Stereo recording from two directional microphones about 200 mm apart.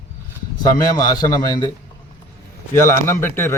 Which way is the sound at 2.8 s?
15° left (ahead or behind).